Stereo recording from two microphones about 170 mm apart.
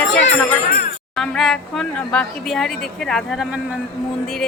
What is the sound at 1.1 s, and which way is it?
Speech, 5° left (ahead or behind).